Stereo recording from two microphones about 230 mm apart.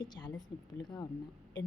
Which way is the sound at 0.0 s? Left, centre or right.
Centre.